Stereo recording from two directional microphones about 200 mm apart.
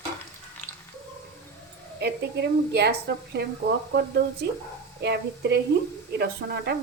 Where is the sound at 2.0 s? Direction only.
55° right (ahead or behind).